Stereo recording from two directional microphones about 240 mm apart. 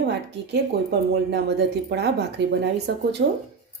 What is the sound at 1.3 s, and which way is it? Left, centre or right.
A woman's voice, right.